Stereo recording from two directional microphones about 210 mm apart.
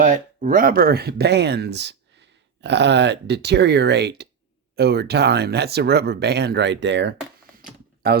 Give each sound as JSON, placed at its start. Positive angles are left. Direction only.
{"t": 0.0, "sound": "speech", "side_deg": -35}